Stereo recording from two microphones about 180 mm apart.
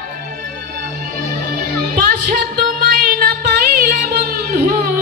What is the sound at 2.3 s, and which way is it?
Music, 55° right (ahead or behind).